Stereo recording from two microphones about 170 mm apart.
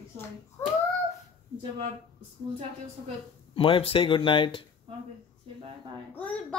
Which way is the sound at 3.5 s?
30° left (ahead or behind).